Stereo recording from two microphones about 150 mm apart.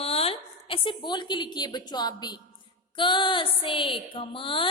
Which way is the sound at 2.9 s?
35° left (ahead or behind).